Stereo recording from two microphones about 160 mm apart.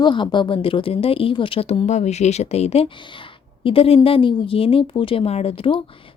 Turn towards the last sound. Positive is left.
turn(degrees=35)  # may be behind; listen again after turning